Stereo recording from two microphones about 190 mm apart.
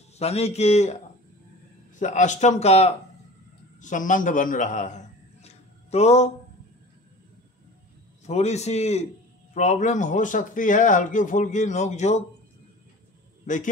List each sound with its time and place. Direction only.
0.2 s a man's voice: 35° left (ahead or behind)
2.0 s a man's voice: 40° left (ahead or behind)
8.3 s a man's voice: 35° left (ahead or behind)